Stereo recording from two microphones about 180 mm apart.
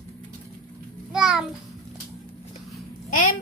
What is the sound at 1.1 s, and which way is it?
Speech, 5° right (ahead or behind).